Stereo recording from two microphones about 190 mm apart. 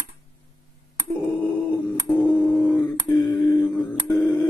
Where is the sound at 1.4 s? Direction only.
5° left (ahead or behind).